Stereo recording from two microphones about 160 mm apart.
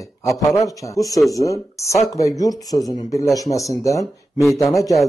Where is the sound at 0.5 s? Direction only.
20° left (ahead or behind).